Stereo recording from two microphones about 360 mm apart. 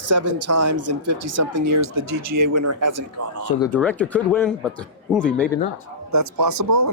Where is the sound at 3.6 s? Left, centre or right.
Centre.